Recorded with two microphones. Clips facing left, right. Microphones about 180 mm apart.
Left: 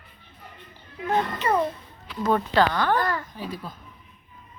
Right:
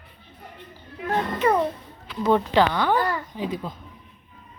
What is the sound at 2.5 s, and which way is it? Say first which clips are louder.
Speech: right 1 dB; 15° right (ahead or behind).